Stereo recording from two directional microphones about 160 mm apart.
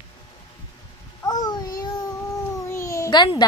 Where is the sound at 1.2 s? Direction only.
25° left (ahead or behind).